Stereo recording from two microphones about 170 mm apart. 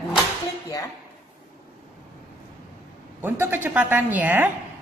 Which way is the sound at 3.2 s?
10° right (ahead or behind).